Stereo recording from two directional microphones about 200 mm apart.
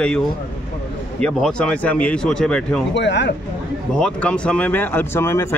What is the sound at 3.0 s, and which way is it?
Speech, 60° left (ahead or behind).